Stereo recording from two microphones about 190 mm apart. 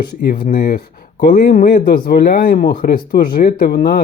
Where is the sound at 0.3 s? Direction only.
50° left (ahead or behind).